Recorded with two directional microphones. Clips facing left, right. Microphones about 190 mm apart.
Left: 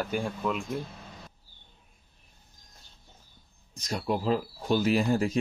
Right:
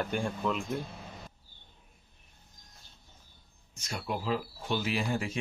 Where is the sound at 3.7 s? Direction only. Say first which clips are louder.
Left 6 dB; 35° left (ahead or behind).